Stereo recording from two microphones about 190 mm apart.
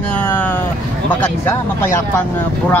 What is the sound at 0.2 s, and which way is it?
Vehicle, 10° left (ahead or behind).